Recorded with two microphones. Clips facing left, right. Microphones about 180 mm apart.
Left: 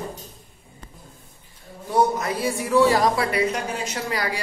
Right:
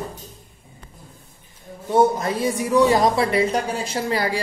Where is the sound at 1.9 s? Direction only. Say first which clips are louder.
Right 3 dB; 25° right (ahead or behind).